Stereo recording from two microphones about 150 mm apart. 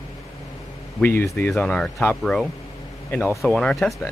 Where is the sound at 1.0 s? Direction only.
15° left (ahead or behind).